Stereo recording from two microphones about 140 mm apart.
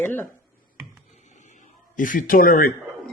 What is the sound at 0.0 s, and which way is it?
Speech, 15° left (ahead or behind).